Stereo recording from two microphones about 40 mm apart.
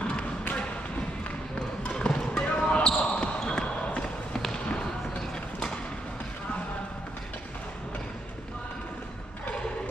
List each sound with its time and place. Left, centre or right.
1.8 s basketball bounce: left